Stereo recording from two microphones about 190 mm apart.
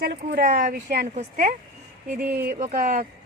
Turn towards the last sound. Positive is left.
turn(degrees=-40)  # may be behind; listen again after turning